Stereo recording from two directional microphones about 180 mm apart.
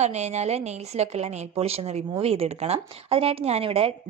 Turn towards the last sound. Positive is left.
turn(degrees=-30)  # may be behind; listen again after turning